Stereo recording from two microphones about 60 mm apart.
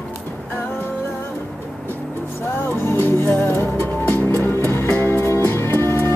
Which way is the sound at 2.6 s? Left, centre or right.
Left.